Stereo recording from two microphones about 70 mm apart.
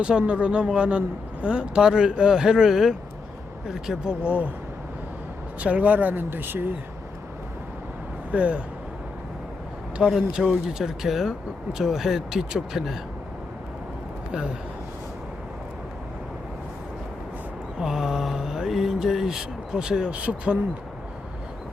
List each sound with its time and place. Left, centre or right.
0.0 s speech: centre
5.5 s speech: centre
8.3 s speech: centre
10.0 s speech: centre
17.7 s speech: centre